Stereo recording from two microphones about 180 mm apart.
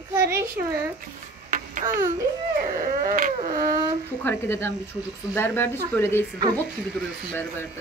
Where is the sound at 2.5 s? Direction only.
45° right (ahead or behind).